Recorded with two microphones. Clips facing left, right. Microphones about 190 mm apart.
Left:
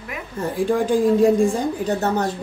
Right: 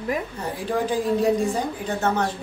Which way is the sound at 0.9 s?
50° left (ahead or behind).